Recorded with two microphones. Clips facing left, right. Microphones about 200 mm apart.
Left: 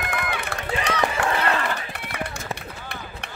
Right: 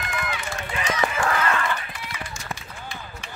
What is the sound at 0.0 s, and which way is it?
Run, 60° left (ahead or behind).